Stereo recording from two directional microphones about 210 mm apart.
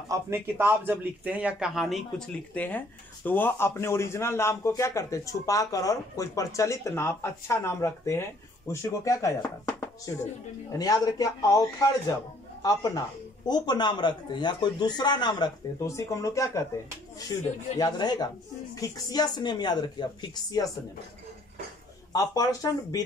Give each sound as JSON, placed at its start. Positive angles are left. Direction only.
{"t": 0.1, "sound": "a man's voice", "side_deg": -10}
{"t": 12.6, "sound": "a man's voice", "side_deg": 15}
{"t": 17.7, "sound": "a man's voice", "side_deg": 20}
{"t": 22.1, "sound": "a man's voice", "side_deg": 15}